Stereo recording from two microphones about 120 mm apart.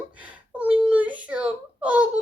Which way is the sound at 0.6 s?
10° right (ahead or behind).